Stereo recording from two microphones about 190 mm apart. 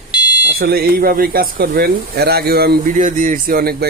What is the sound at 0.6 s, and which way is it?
Speech, 55° right (ahead or behind).